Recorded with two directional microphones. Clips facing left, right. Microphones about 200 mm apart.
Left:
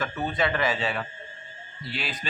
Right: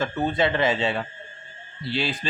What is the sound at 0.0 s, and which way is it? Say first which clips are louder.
Speech: right 4 dB; 25° right (ahead or behind).